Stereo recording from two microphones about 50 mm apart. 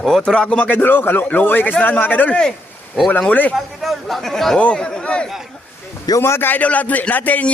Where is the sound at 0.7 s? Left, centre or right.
Left.